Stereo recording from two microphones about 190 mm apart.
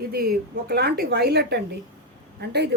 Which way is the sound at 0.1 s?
50° right (ahead or behind).